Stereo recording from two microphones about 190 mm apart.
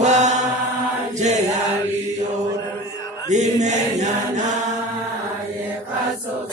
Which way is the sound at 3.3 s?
40° right (ahead or behind).